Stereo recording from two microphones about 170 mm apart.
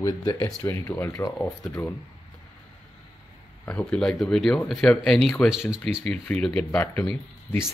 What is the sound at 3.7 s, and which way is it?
Speech, 10° left (ahead or behind).